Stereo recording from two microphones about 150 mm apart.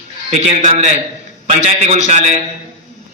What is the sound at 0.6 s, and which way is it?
A man's voice, 45° right (ahead or behind).